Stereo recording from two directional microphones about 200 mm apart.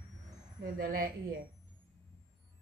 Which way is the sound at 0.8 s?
45° right (ahead or behind).